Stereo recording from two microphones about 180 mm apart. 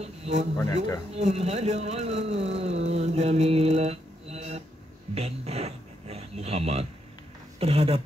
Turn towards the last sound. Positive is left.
turn(degrees=-30)  # may be behind; listen again after turning